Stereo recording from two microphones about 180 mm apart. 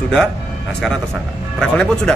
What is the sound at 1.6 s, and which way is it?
Speech, 5° left (ahead or behind).